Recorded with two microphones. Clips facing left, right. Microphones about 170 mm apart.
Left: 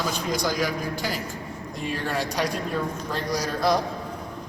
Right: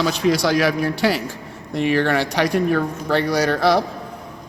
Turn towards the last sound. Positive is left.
turn(degrees=-75)  # may be behind; listen again after turning